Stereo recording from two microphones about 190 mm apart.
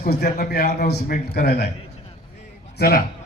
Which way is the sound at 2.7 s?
55° left (ahead or behind).